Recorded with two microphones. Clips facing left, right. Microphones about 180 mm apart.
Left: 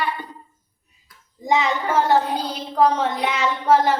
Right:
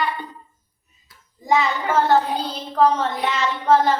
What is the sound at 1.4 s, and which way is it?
A woman's voice, 15° left (ahead or behind).